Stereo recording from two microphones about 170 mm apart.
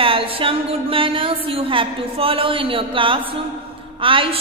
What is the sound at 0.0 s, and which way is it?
A woman's voice, 30° right (ahead or behind).